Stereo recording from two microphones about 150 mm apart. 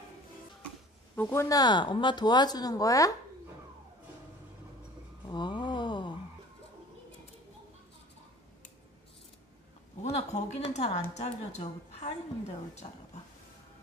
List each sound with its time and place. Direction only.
1.1 s speech: 15° left (ahead or behind)
5.3 s a sound: 30° left (ahead or behind)
10.0 s a woman's voice: 45° left (ahead or behind)